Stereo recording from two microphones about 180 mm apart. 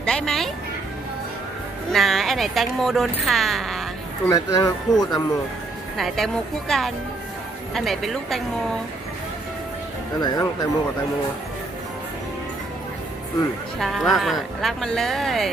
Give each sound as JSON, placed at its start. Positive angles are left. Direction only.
{"t": 0.0, "sound": "speech", "side_deg": 5}
{"t": 1.9, "sound": "speech", "side_deg": 0}
{"t": 4.3, "sound": "speech", "side_deg": 20}
{"t": 6.0, "sound": "speech", "side_deg": 0}
{"t": 10.2, "sound": "speech", "side_deg": 20}
{"t": 13.7, "sound": "speech", "side_deg": 0}